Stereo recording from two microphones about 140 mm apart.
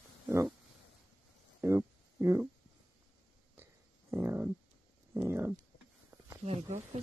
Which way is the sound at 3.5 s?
15° right (ahead or behind).